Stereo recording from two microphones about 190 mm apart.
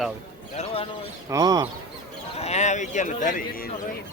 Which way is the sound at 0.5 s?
30° left (ahead or behind).